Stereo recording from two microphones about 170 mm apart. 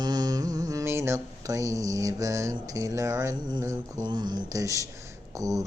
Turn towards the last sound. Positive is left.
turn(degrees=-20)  # may be behind; listen again after turning